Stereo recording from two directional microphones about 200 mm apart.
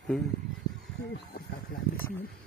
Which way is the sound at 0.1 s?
5° left (ahead or behind).